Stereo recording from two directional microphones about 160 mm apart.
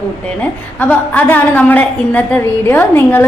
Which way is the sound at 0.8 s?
10° left (ahead or behind).